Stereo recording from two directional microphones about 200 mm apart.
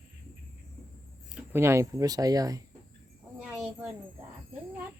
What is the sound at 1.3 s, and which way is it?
Speech, 10° right (ahead or behind).